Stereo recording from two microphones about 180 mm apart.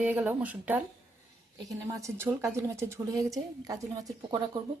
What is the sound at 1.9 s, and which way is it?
A woman's voice, 15° right (ahead or behind).